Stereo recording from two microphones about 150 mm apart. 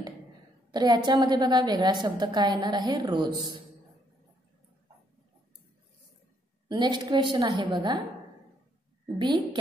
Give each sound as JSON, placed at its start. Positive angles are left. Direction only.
{"t": 0.7, "sound": "a woman's voice", "side_deg": -30}
{"t": 6.7, "sound": "a woman's voice", "side_deg": -30}
{"t": 9.2, "sound": "a woman's voice", "side_deg": -30}